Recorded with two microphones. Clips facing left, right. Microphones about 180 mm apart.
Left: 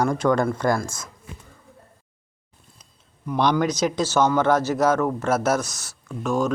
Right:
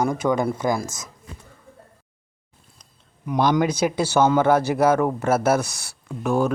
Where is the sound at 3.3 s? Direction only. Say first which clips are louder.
Right 1 dB; 10° right (ahead or behind).